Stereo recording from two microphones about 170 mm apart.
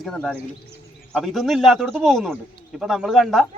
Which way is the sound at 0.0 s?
5° left (ahead or behind).